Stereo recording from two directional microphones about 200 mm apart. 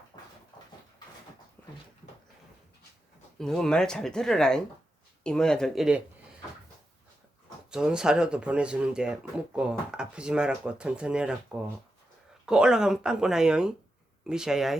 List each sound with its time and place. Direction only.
1.6 s dog: 10° left (ahead or behind)
3.3 s speech: 5° left (ahead or behind)
7.7 s speech: 5° right (ahead or behind)